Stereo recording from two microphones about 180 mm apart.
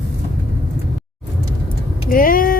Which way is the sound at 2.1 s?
50° left (ahead or behind).